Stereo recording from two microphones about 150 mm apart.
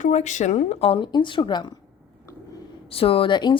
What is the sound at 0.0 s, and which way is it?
Speech, 50° left (ahead or behind).